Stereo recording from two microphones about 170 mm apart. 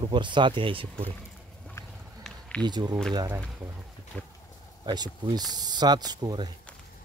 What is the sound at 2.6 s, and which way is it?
Speech, 25° right (ahead or behind).